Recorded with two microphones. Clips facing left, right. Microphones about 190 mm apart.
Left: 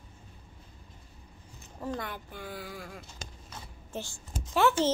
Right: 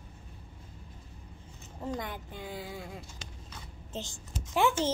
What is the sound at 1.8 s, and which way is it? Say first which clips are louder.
A woman's voice: even; 15° right (ahead or behind).